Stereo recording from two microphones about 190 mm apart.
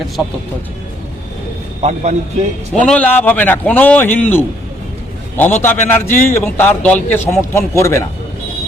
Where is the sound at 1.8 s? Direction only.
35° right (ahead or behind).